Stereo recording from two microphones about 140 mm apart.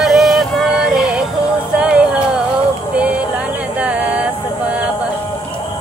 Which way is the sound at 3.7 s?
10° right (ahead or behind).